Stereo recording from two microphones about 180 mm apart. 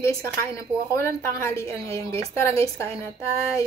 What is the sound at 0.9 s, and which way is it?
A woman's voice, 15° left (ahead or behind).